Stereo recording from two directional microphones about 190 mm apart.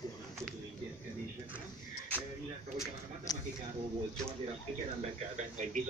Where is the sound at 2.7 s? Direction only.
20° left (ahead or behind).